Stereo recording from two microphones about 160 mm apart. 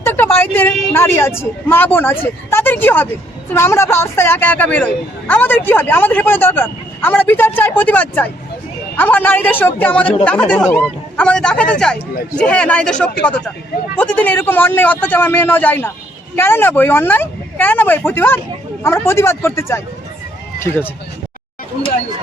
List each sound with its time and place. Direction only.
0.0 s speech: 15° left (ahead or behind)